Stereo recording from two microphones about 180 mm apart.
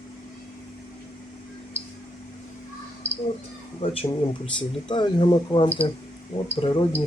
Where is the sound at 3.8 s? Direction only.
30° left (ahead or behind).